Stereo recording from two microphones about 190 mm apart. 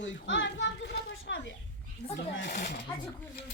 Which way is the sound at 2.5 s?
50° left (ahead or behind).